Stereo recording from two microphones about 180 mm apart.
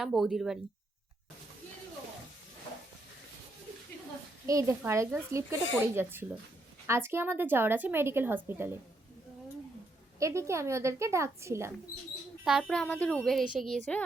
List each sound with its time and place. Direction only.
0.0 s a child's voice: centre (ahead or behind)
4.4 s a woman's voice: 15° right (ahead or behind)
10.2 s a woman's voice: 15° right (ahead or behind)
12.5 s a child's voice: centre (ahead or behind)